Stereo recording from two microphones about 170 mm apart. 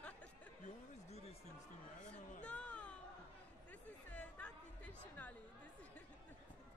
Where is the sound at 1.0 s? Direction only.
40° left (ahead or behind).